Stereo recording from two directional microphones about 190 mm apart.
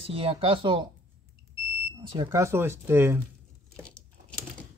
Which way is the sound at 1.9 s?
20° right (ahead or behind).